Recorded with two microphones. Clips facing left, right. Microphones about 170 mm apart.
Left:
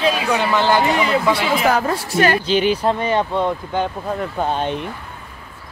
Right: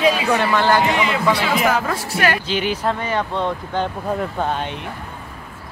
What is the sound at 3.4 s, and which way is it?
Speech, 5° left (ahead or behind).